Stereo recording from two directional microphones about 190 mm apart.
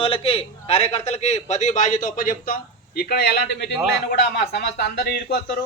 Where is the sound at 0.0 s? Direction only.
30° left (ahead or behind).